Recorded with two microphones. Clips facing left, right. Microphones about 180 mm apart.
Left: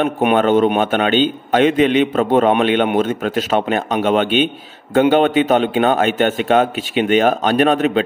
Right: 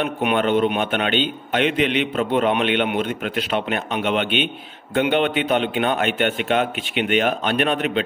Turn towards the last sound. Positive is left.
turn(degrees=40)  # may be behind; listen again after turning